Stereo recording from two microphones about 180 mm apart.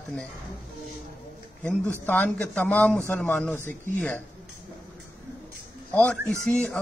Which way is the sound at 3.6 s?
45° right (ahead or behind).